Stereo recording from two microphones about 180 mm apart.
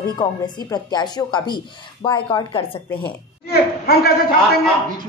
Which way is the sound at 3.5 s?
60° left (ahead or behind).